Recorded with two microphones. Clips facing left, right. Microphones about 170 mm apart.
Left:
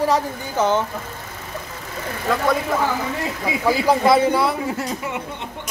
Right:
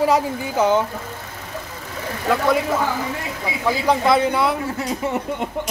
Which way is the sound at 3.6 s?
5° left (ahead or behind).